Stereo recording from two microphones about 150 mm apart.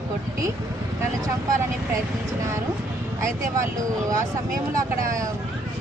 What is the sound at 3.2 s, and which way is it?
Speech, 20° right (ahead or behind).